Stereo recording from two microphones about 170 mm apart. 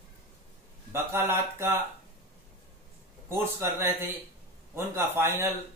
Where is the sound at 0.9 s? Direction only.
15° right (ahead or behind).